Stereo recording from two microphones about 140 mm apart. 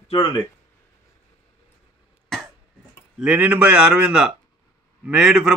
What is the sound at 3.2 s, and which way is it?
A man's voice, 10° right (ahead or behind).